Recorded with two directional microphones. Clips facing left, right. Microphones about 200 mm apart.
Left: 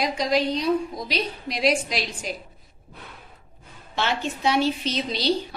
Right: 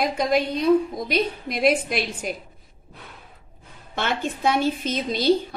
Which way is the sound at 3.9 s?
50° right (ahead or behind).